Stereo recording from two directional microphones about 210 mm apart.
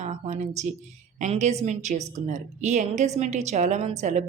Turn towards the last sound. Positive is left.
turn(degrees=-35)  # may be behind; listen again after turning